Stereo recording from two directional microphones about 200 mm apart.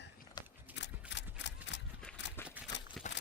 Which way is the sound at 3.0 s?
Centre (ahead or behind).